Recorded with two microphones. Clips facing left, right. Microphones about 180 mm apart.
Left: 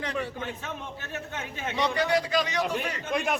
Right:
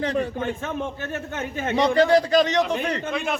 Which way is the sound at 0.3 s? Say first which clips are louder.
Right 8 dB; 50° right (ahead or behind).